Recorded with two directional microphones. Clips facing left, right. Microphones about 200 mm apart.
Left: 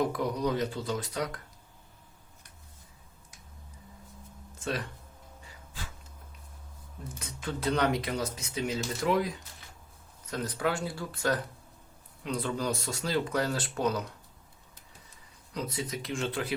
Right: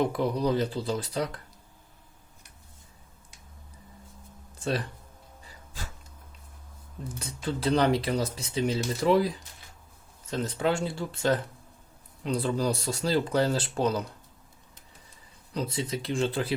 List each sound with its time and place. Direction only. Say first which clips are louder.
0.0 s speech: right 3 dB; 30° right (ahead or behind)
7.2 s speech: right 4 dB; 30° right (ahead or behind)
15.5 s speech: right 4 dB; 30° right (ahead or behind)